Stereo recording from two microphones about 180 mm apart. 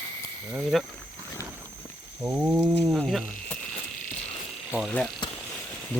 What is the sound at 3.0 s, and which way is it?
Speech, centre (ahead or behind).